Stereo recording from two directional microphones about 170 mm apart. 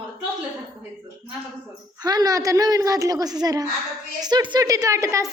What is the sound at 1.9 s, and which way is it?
A woman's voice, 25° right (ahead or behind).